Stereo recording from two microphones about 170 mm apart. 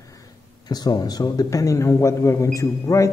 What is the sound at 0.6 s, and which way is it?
A man's voice, 25° left (ahead or behind).